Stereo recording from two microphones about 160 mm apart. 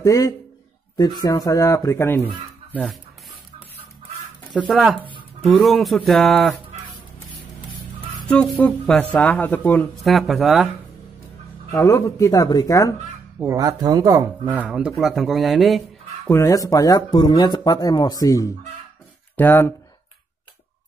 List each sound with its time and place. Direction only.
0.0 s a man's voice: 20° left (ahead or behind)
2.8 s rub: centre (ahead or behind)
4.7 s speech: centre (ahead or behind)
8.3 s speech: 5° left (ahead or behind)
11.7 s speech: 15° left (ahead or behind)
13.4 s speech: 20° right (ahead or behind)
14.5 s speech: 10° right (ahead or behind)
16.3 s speech: 20° left (ahead or behind)